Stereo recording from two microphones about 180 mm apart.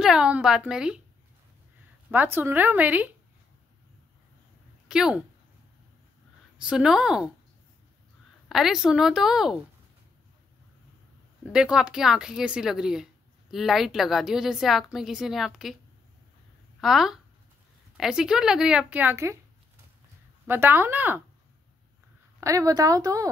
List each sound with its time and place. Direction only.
0.0 s speech: 5° right (ahead or behind)
2.0 s speech: 10° right (ahead or behind)
4.8 s speech: 5° right (ahead or behind)
6.6 s speech: 5° right (ahead or behind)
8.5 s speech: centre (ahead or behind)
11.5 s speech: 5° right (ahead or behind)
16.8 s speech: centre (ahead or behind)
20.4 s speech: 10° right (ahead or behind)
22.4 s a woman's voice: 15° right (ahead or behind)